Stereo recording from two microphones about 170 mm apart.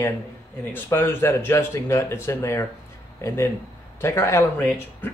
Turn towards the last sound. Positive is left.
turn(degrees=10)  # may be behind; listen again after turning